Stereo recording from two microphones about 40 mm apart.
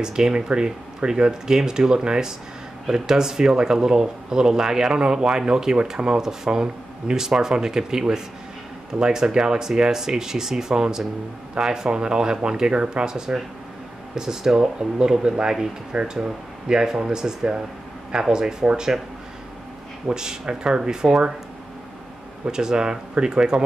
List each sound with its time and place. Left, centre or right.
0.0 s speech: centre
20.1 s speech: centre
22.4 s speech: centre